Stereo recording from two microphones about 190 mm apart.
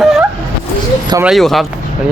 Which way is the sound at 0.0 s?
Centre (ahead or behind).